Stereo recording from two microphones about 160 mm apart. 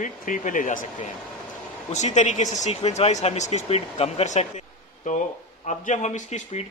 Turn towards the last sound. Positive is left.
turn(degrees=50)  # may be behind; listen again after turning